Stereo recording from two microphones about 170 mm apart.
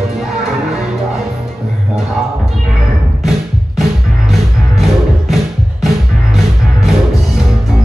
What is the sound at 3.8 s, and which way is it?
Music, centre (ahead or behind).